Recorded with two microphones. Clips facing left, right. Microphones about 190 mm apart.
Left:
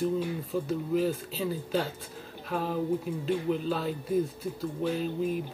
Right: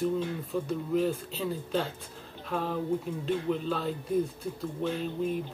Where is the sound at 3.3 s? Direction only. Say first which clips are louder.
Left 1 dB; 5° left (ahead or behind).